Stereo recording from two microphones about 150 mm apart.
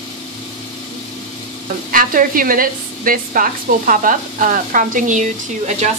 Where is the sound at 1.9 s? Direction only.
65° right (ahead or behind).